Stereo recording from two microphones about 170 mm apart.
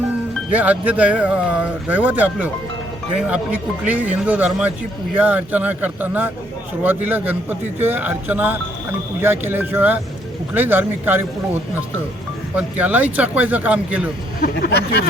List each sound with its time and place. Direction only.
0.5 s a man's voice: 10° right (ahead or behind)
12.5 s a man's voice: 10° right (ahead or behind)
14.4 s speech: 65° left (ahead or behind)